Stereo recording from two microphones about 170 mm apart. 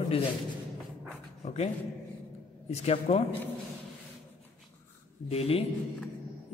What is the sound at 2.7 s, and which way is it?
Speech, 40° left (ahead or behind).